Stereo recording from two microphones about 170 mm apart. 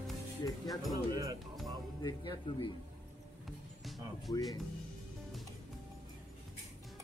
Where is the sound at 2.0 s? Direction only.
25° left (ahead or behind).